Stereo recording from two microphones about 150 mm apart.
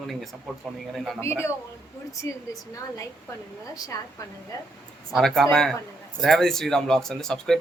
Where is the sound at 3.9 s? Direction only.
25° left (ahead or behind).